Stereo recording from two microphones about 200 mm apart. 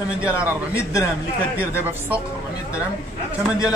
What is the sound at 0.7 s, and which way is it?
Speech, 15° left (ahead or behind).